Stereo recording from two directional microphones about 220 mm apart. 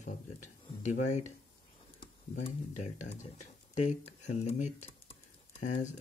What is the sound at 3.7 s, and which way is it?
Speech, 30° left (ahead or behind).